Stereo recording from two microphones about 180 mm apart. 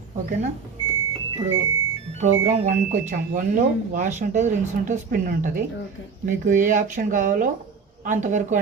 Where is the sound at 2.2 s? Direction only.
40° right (ahead or behind).